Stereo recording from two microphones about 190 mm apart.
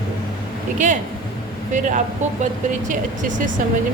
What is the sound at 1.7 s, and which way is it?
A woman's voice, 40° right (ahead or behind).